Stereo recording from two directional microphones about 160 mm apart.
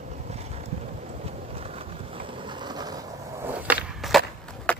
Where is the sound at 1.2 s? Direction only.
35° right (ahead or behind).